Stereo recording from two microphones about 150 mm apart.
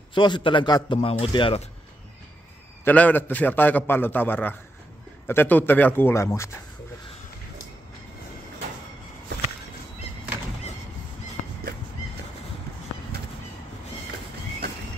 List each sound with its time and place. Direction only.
0.1 s a man's voice: 30° left (ahead or behind)
2.8 s a man's voice: 10° left (ahead or behind)